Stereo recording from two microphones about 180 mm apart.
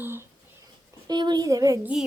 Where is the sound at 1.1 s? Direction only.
25° right (ahead or behind).